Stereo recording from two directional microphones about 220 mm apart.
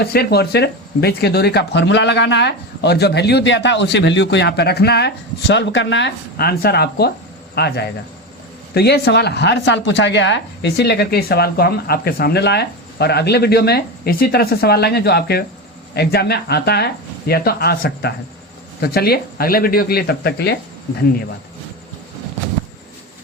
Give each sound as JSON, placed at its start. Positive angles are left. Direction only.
{"t": 0.0, "sound": "speech", "side_deg": 45}